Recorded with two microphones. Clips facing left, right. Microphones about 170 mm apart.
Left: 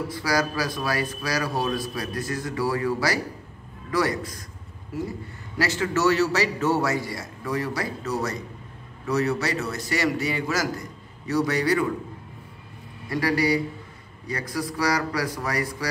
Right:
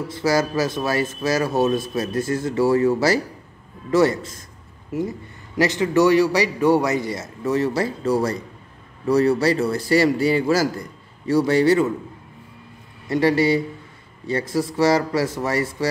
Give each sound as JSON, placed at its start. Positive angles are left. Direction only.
{"t": 0.1, "sound": "a man's voice", "side_deg": -25}
{"t": 13.1, "sound": "a man's voice", "side_deg": -25}